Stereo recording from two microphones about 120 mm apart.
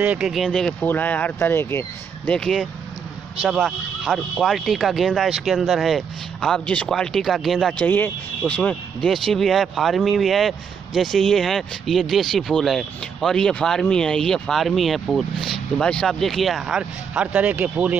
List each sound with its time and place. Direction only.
0.0 s speech: 10° right (ahead or behind); by 2.3 s 20° left (ahead or behind)
2.3 s speech: 5° left (ahead or behind)
7.8 s speech: 15° left (ahead or behind); by 17.9 s 10° right (ahead or behind)